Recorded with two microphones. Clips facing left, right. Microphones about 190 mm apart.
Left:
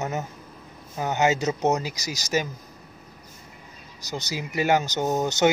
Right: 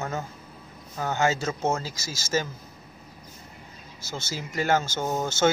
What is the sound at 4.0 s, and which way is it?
Speech, 15° left (ahead or behind).